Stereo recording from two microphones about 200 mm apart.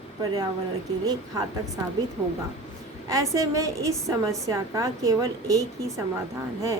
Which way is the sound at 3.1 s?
15° right (ahead or behind).